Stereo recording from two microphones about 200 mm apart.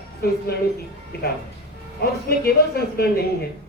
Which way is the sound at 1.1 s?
50° left (ahead or behind).